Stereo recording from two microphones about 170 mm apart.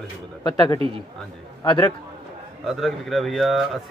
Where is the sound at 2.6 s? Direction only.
Centre (ahead or behind).